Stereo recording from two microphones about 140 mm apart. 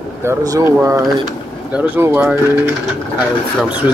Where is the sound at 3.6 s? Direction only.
10° right (ahead or behind).